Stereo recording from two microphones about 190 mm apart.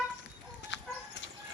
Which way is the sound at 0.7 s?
70° left (ahead or behind).